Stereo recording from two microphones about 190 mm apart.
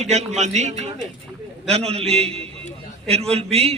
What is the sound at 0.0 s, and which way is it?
A man's voice, 35° right (ahead or behind).